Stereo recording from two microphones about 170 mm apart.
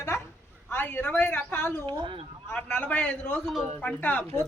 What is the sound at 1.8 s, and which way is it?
Speech, 30° right (ahead or behind).